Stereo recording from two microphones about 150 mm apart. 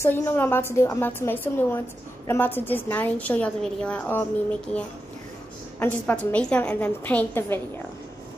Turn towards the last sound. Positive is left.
turn(degrees=15)  # may be behind; listen again after turning